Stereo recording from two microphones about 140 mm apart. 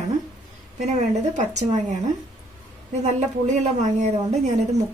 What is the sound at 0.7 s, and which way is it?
A woman's voice, 60° right (ahead or behind).